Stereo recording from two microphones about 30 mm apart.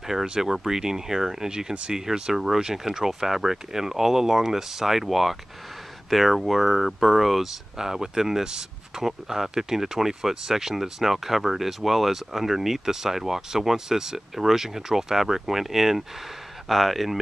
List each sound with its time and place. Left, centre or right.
0.4 s speech: centre
7.7 s speech: centre